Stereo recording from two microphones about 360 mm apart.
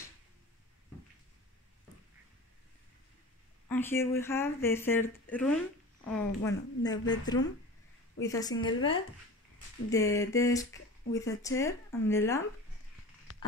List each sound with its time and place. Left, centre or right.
3.6 s speech: centre
8.5 s speech: left
9.8 s speech: centre